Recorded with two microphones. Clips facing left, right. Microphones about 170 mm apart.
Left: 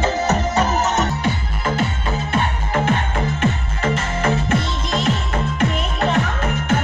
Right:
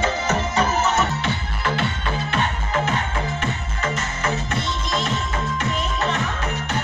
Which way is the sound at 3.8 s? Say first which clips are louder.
Left 5 dB; 30° left (ahead or behind).